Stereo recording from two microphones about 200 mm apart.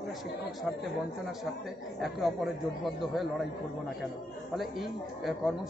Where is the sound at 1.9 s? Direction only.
Centre (ahead or behind).